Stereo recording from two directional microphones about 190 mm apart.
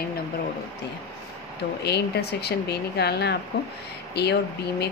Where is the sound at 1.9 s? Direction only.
60° left (ahead or behind).